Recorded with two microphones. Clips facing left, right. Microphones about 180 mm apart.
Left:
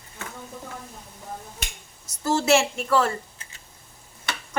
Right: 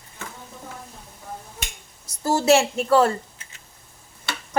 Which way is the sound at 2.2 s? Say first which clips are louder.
Right 2 dB; 35° right (ahead or behind).